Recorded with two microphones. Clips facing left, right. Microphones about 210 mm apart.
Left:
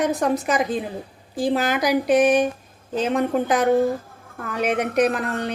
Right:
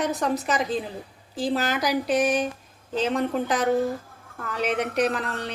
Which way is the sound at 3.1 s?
55° left (ahead or behind).